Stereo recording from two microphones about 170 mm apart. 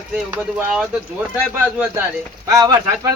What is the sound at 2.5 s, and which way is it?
Speech, 20° right (ahead or behind).